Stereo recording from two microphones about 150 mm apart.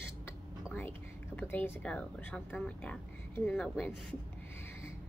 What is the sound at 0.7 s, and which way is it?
Speech, 15° left (ahead or behind).